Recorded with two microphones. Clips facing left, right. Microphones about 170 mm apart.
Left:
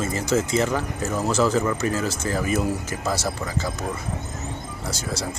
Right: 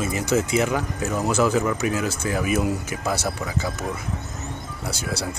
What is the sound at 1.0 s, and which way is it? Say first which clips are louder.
Speech: even; centre (ahead or behind).